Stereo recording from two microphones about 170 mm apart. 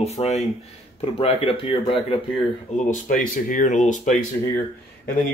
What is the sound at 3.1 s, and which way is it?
Speech, 50° left (ahead or behind).